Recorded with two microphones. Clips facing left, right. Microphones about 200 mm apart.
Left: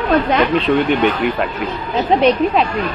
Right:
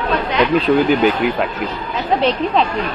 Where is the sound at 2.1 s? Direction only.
20° left (ahead or behind).